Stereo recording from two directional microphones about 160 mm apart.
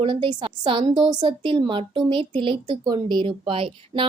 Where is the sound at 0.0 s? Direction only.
30° right (ahead or behind).